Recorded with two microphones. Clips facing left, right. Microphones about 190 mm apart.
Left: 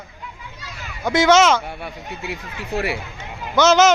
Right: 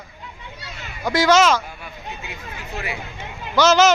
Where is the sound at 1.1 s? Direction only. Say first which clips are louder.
Left 2 dB; 20° left (ahead or behind).